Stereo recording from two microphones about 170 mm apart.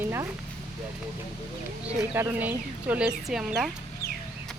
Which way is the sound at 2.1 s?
10° right (ahead or behind).